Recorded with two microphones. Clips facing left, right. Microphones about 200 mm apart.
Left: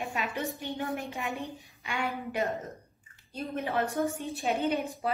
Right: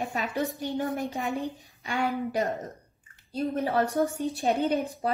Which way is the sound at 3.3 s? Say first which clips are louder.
Right 5 dB; 35° right (ahead or behind).